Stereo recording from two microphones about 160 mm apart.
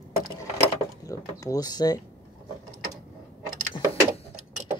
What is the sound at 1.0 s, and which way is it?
Speech, 20° left (ahead or behind).